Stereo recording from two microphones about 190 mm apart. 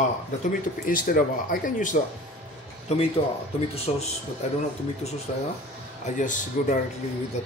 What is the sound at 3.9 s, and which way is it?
Speech, 30° left (ahead or behind).